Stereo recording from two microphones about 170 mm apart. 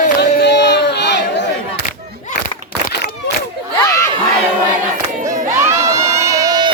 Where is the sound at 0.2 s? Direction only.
85° left.